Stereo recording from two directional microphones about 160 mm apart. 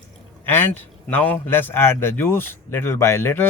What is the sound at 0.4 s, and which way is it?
A man's voice, 15° left (ahead or behind).